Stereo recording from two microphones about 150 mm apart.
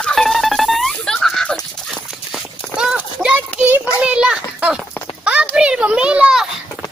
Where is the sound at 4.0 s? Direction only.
5° right (ahead or behind).